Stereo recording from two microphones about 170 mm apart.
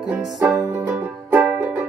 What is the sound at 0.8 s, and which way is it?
Music, 10° right (ahead or behind).